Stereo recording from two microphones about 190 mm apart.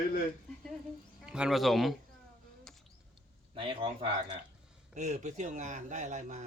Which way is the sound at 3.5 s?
25° right (ahead or behind).